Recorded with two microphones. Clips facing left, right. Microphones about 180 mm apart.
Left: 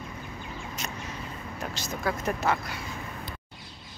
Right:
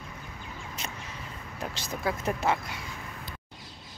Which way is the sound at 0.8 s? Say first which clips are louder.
Left 1 dB; 30° right (ahead or behind).